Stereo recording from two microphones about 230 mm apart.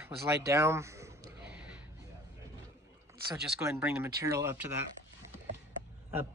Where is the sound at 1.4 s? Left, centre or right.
Centre.